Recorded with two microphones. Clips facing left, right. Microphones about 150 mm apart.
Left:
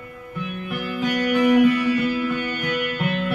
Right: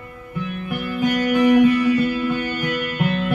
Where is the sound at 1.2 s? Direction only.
25° right (ahead or behind).